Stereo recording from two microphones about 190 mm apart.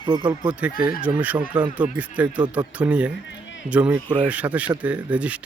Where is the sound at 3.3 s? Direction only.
75° left (ahead or behind).